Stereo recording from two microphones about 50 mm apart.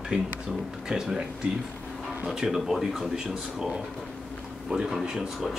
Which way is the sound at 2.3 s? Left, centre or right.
Centre.